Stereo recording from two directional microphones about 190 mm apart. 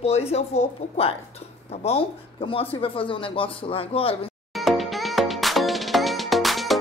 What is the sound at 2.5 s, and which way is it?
Speech, 30° left (ahead or behind).